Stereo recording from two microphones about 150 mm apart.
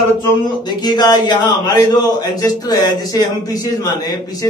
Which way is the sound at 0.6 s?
30° left (ahead or behind).